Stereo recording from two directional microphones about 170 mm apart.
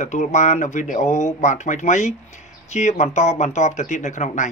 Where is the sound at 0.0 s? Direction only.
45° left (ahead or behind).